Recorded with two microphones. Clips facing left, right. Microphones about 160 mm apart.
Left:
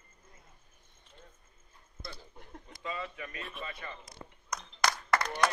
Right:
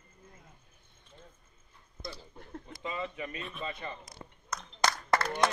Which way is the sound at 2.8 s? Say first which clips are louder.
Right 2 dB; 20° right (ahead or behind).